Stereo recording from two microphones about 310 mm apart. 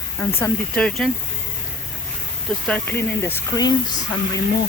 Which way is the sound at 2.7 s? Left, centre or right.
Centre.